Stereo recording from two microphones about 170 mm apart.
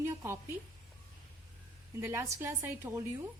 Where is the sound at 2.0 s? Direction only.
15° right (ahead or behind).